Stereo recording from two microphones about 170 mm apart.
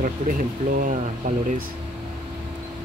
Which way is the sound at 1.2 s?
50° right (ahead or behind).